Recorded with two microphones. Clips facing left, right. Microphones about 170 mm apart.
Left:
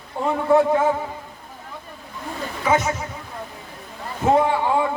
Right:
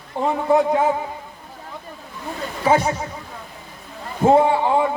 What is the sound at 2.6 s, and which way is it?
Speech, 30° right (ahead or behind).